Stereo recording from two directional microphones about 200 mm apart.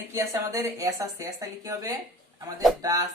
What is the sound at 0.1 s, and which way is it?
A woman's voice, 15° right (ahead or behind).